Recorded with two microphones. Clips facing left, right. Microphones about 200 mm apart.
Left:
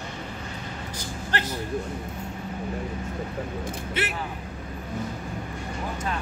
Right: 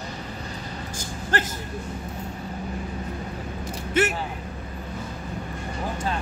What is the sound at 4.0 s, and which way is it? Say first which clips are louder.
Speech: right 9 dB; 45° right (ahead or behind).